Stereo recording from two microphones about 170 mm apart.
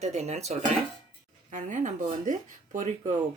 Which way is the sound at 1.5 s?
45° right (ahead or behind).